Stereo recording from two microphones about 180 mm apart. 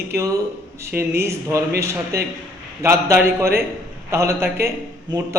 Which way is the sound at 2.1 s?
60° right (ahead or behind).